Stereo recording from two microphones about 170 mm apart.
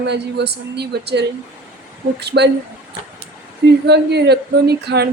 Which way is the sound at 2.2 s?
80° right.